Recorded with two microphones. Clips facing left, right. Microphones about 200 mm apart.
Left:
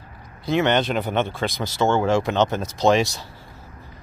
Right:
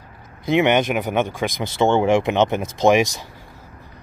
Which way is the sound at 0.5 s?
15° right (ahead or behind).